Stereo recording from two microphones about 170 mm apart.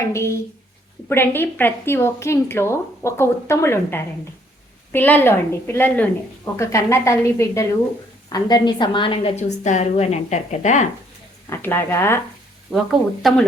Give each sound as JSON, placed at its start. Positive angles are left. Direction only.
{"t": 0.1, "sound": "a woman's voice", "side_deg": 15}
{"t": 11.4, "sound": "a woman's voice", "side_deg": 15}
{"t": 12.7, "sound": "a woman's voice", "side_deg": 0}